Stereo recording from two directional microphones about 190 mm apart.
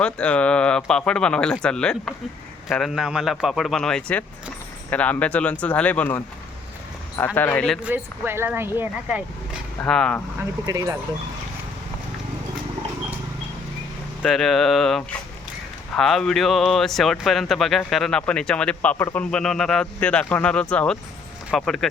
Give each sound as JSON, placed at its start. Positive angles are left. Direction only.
{"t": 0.0, "sound": "speech", "side_deg": 5}
{"t": 7.3, "sound": "speech", "side_deg": 10}
{"t": 7.9, "sound": "speech", "side_deg": -10}
{"t": 9.8, "sound": "speech", "side_deg": 5}
{"t": 10.7, "sound": "speech", "side_deg": -15}
{"t": 14.2, "sound": "speech", "side_deg": 0}